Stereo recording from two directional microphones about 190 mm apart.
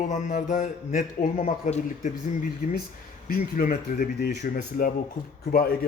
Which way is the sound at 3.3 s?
45° left (ahead or behind).